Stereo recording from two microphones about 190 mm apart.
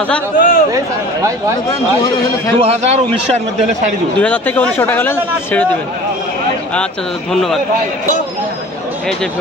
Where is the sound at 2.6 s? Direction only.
35° right (ahead or behind).